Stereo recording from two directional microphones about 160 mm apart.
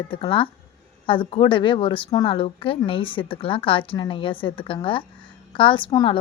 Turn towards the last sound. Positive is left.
turn(degrees=30)  # may be behind; listen again after turning